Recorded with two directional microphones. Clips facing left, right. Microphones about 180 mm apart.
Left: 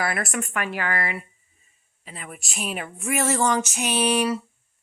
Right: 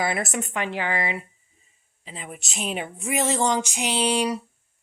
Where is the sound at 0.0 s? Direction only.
20° right (ahead or behind).